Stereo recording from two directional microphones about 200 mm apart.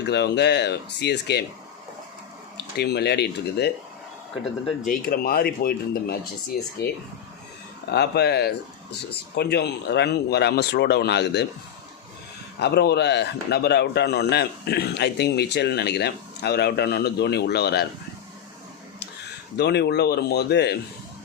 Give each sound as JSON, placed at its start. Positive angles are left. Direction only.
{"t": 0.0, "sound": "a man's voice", "side_deg": 55}
{"t": 2.7, "sound": "a man's voice", "side_deg": 55}
{"t": 4.9, "sound": "speech", "side_deg": 45}
{"t": 7.9, "sound": "a man's voice", "side_deg": 55}
{"t": 12.5, "sound": "a man's voice", "side_deg": 55}
{"t": 19.5, "sound": "a man's voice", "side_deg": 55}